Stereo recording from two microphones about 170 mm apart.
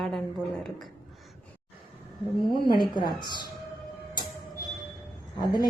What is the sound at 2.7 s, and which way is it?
Speech, 25° left (ahead or behind).